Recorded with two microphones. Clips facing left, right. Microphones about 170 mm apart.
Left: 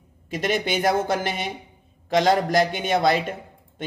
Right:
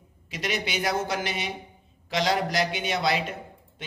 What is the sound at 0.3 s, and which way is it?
Speech, 50° left (ahead or behind).